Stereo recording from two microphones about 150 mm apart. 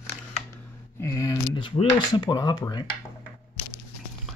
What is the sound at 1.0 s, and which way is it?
Speech, 20° left (ahead or behind).